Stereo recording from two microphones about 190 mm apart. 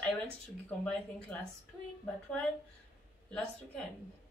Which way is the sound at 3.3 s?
5° left (ahead or behind).